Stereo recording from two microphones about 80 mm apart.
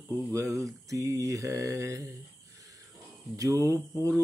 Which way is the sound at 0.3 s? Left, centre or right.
Right.